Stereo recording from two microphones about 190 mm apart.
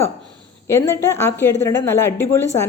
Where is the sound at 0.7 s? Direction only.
15° left (ahead or behind).